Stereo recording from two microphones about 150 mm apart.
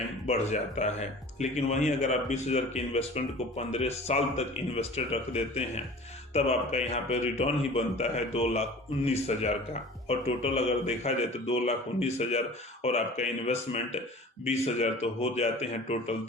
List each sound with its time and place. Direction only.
0.3 s speech: 50° left (ahead or behind)